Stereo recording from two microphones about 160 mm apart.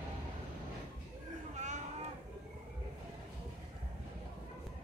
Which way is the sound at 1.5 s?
50° right (ahead or behind).